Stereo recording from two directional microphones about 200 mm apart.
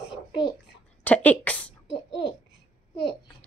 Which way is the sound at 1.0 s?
10° left (ahead or behind).